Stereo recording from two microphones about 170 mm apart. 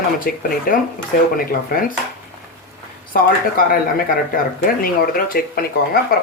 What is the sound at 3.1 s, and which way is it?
Speech, 55° left (ahead or behind).